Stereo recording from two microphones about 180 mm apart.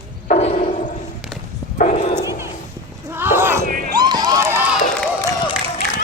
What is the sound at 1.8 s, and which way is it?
Bow-wow, 40° left (ahead or behind).